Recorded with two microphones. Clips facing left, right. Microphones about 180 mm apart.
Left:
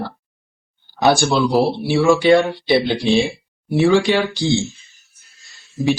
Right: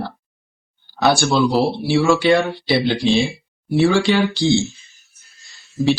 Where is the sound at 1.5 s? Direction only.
Centre (ahead or behind).